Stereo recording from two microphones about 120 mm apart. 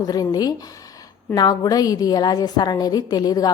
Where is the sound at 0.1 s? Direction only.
30° left (ahead or behind).